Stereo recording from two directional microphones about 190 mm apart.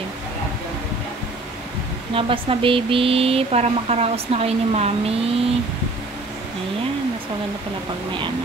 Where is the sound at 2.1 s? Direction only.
30° right (ahead or behind).